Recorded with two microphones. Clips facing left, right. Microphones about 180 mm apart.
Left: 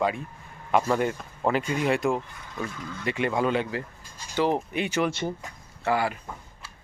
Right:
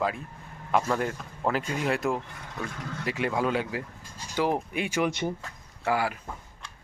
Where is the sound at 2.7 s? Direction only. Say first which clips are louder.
Right 1 dB; 65° right (ahead or behind).